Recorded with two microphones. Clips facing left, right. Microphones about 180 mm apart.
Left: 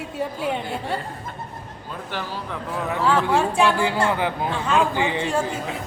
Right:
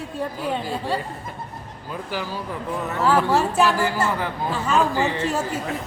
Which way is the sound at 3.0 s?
5° right (ahead or behind).